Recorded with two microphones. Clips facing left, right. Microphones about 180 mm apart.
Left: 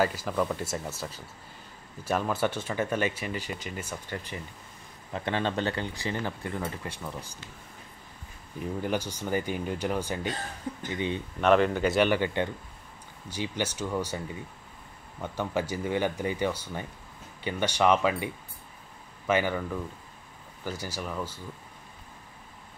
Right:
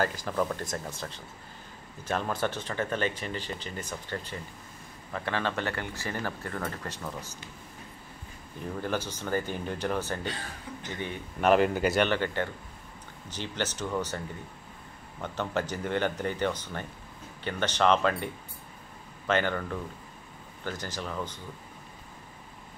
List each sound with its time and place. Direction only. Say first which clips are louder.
0.0 s speech: left 2 dB; 5° left (ahead or behind)
8.8 s speech: left 1 dB; 10° left (ahead or behind)
10.7 s speech: left 8 dB; 45° left (ahead or behind)
11.4 s speech: even; 5° right (ahead or behind)
12.0 s speech: left 2 dB; 15° left (ahead or behind)